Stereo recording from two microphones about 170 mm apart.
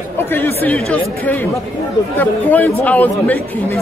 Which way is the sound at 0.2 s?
15° left (ahead or behind).